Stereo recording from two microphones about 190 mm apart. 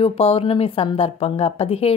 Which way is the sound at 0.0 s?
30° left (ahead or behind).